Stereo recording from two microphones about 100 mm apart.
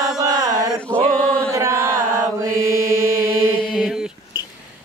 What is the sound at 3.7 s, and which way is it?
Mantra, 5° right (ahead or behind).